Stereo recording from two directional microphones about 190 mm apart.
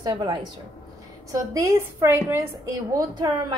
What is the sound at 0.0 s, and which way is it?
A woman's voice, 20° right (ahead or behind).